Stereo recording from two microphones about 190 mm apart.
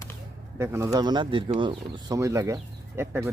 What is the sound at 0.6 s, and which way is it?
Speech, 15° right (ahead or behind).